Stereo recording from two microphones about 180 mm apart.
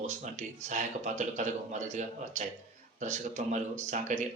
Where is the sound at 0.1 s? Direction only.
45° right (ahead or behind).